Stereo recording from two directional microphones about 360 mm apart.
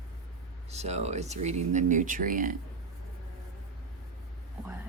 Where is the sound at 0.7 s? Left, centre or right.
Centre.